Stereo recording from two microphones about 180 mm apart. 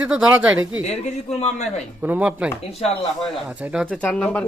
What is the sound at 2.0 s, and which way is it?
Speech, 5° right (ahead or behind).